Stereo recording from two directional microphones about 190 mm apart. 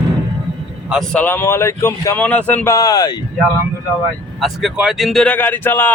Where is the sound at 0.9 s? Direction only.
5° left (ahead or behind); by 3.2 s 20° left (ahead or behind).